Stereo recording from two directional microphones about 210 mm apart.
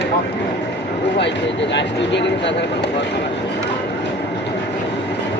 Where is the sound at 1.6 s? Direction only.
60° left (ahead or behind).